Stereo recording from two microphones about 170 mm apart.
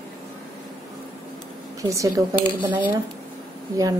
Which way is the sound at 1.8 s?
20° right (ahead or behind).